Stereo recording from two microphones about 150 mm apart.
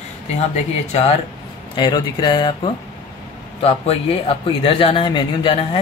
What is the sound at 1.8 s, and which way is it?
Speech, 30° left (ahead or behind).